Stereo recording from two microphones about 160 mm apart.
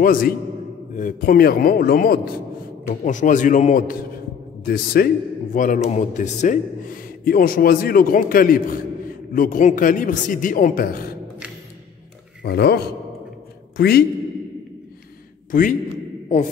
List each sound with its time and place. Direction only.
0.0 s a man's voice: 60° left (ahead or behind)
2.9 s a man's voice: 50° left (ahead or behind)
4.6 s a man's voice: 70° left (ahead or behind)
12.4 s a man's voice: 90° left
13.7 s a man's voice: 75° left (ahead or behind)